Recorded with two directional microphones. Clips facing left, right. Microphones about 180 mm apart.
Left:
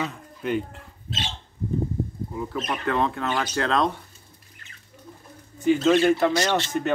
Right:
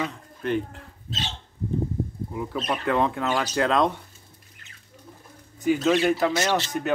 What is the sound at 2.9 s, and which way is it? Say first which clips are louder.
Speech: right 1 dB; 15° right (ahead or behind).